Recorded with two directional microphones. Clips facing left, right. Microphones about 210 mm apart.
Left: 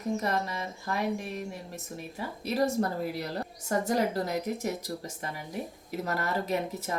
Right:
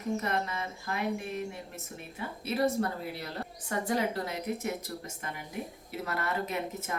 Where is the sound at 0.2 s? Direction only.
35° left (ahead or behind).